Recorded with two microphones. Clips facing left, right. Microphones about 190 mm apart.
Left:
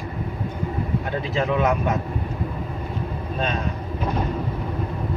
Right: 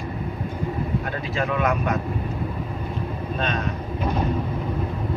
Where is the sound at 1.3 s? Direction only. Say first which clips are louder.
Left 2 dB; 25° left (ahead or behind).